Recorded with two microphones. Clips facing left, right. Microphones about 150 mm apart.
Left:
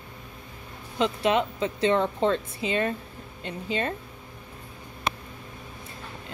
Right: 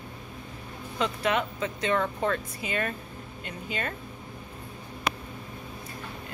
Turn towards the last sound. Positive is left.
turn(degrees=25)  # may be behind; listen again after turning